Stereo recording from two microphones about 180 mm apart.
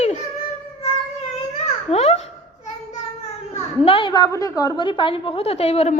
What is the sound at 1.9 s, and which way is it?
Babbling, 35° left (ahead or behind).